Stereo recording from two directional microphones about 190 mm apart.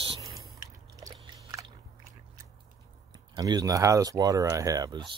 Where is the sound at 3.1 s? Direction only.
20° right (ahead or behind).